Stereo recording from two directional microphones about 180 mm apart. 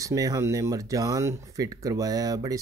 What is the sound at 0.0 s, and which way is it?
Speech, 20° right (ahead or behind).